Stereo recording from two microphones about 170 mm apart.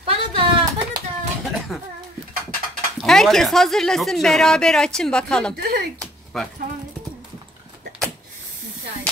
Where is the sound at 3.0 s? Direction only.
Centre (ahead or behind).